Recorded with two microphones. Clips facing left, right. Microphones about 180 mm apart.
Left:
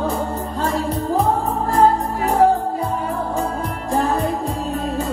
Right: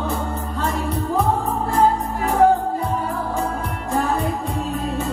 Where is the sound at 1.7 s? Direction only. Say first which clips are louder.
Left 3 dB; 35° left (ahead or behind).